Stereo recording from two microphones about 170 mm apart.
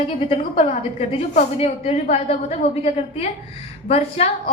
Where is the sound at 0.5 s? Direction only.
50° left (ahead or behind).